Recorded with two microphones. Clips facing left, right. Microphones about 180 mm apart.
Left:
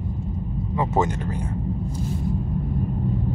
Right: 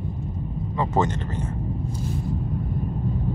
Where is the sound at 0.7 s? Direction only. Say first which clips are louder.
Left 1 dB; 10° left (ahead or behind).